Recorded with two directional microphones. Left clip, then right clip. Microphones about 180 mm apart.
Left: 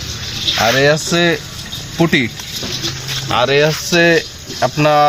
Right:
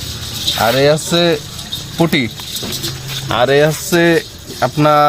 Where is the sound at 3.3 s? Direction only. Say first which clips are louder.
Right 1 dB; 40° right (ahead or behind).